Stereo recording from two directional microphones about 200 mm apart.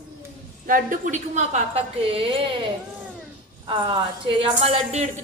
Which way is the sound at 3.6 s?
25° right (ahead or behind).